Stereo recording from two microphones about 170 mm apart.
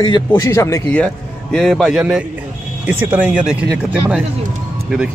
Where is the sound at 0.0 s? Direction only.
25° left (ahead or behind).